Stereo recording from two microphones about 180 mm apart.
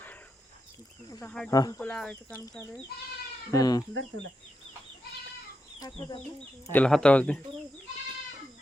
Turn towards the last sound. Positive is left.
turn(degrees=5)  # may be behind; listen again after turning